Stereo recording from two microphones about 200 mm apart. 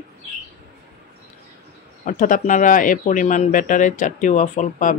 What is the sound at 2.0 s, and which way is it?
Speech, 40° left (ahead or behind).